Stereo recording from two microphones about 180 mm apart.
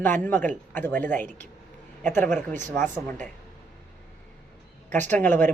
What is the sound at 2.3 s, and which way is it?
Speech, 45° right (ahead or behind).